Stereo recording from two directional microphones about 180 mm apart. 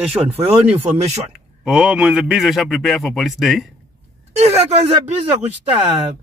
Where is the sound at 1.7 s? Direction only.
5° right (ahead or behind).